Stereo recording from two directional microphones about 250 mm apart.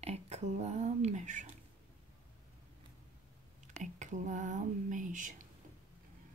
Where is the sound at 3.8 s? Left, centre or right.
Right.